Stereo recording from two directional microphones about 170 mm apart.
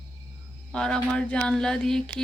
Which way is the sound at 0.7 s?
5° left (ahead or behind).